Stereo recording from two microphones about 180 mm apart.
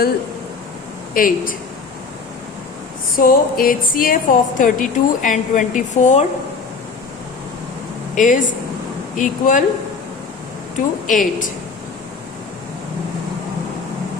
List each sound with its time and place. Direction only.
1.1 s a woman's voice: 50° left (ahead or behind)
3.2 s a woman's voice: 50° left (ahead or behind)
8.1 s a woman's voice: 45° left (ahead or behind)
11.0 s a woman's voice: 45° left (ahead or behind)